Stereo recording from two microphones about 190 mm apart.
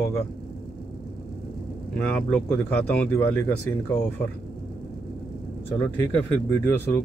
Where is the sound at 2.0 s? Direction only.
5° left (ahead or behind).